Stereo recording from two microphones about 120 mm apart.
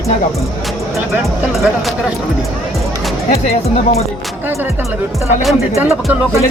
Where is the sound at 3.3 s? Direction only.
60° left (ahead or behind).